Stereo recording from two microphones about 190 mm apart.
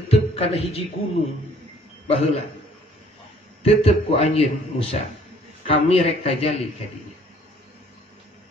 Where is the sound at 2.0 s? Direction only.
35° left (ahead or behind).